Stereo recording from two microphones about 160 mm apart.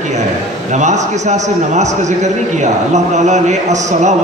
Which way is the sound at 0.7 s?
50° right (ahead or behind).